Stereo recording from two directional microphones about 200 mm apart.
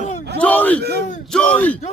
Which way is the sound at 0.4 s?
10° left (ahead or behind).